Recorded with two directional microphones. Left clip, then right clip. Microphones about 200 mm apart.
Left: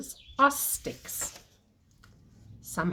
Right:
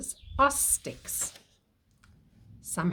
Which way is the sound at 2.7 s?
45° right (ahead or behind).